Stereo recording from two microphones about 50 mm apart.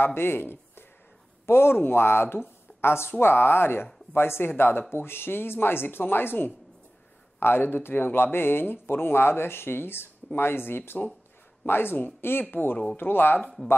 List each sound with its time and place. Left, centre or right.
0.0 s speech: left